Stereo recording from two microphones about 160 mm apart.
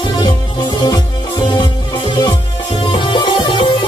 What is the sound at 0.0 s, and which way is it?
Music, 25° left (ahead or behind).